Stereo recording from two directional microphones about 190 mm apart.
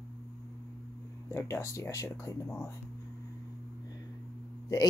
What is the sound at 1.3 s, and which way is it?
Speech, 15° left (ahead or behind).